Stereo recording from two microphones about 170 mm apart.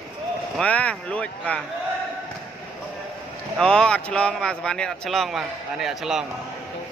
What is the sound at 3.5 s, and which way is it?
Speech, 5° left (ahead or behind).